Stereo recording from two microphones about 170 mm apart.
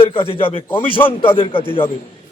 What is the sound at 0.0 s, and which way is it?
A man's voice, 30° left (ahead or behind).